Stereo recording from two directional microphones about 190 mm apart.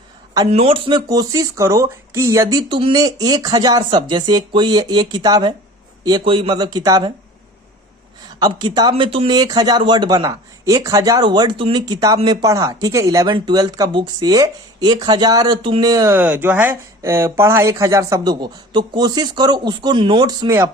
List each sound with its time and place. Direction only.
0.4 s speech: 30° right (ahead or behind)
8.4 s speech: 20° right (ahead or behind)